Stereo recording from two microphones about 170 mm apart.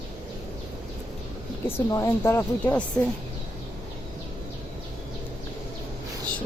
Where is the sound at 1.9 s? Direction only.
20° left (ahead or behind).